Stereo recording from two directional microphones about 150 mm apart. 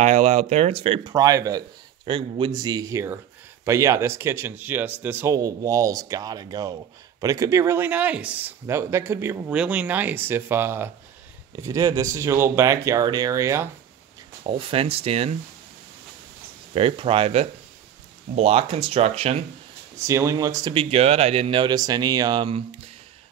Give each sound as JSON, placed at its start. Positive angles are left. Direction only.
{"t": 0.0, "sound": "speech", "side_deg": -50}
{"t": 1.1, "sound": "speech", "side_deg": -25}
{"t": 2.0, "sound": "speech", "side_deg": -35}
{"t": 14.4, "sound": "speech", "side_deg": -40}
{"t": 16.7, "sound": "speech", "side_deg": -40}
{"t": 20.0, "sound": "speech", "side_deg": -20}
{"t": 20.7, "sound": "speech", "side_deg": -40}